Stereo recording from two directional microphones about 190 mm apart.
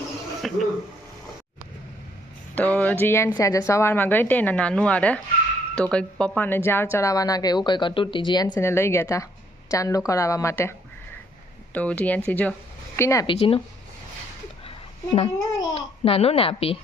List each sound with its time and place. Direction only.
0.4 s speech: centre (ahead or behind)
2.6 s a woman's voice: 10° left (ahead or behind); by 8.4 s 25° left (ahead or behind)
8.5 s a woman's voice: 15° left (ahead or behind)
13.2 s a woman's voice: 30° left (ahead or behind)
15.1 s a woman's voice: 25° left (ahead or behind)
15.7 s a child's voice: 30° left (ahead or behind)